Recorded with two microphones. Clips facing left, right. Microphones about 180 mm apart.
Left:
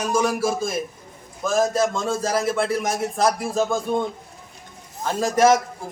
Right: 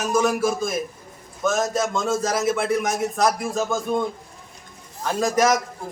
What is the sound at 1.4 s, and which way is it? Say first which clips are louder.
Speech: left 1 dB; 30° left (ahead or behind).